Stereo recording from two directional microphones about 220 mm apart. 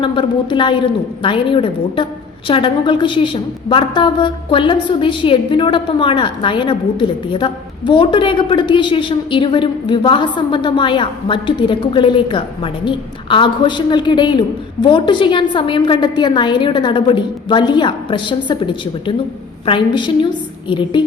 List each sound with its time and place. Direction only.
0.0 s a woman's voice: 20° left (ahead or behind)